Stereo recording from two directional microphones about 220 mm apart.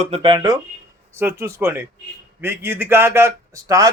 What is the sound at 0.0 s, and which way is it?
A man's voice, 25° right (ahead or behind).